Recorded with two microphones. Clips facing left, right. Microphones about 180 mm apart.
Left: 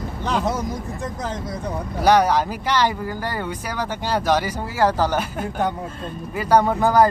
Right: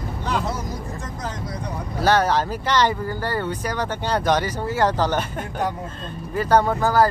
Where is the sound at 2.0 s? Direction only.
15° left (ahead or behind).